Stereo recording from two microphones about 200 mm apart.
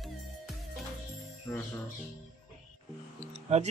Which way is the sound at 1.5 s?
15° left (ahead or behind).